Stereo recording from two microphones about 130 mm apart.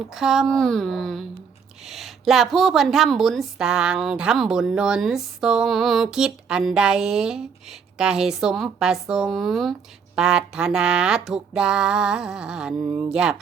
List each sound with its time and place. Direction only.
0.1 s a woman's voice: centre (ahead or behind)
12.8 s speech: 20° right (ahead or behind)
13.1 s a woman's voice: 5° right (ahead or behind)